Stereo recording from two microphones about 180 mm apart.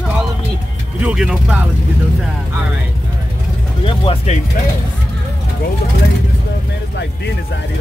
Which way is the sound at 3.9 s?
30° left (ahead or behind).